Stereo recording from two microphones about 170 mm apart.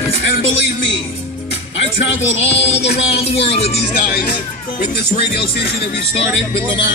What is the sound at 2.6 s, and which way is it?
Speech, 35° left (ahead or behind).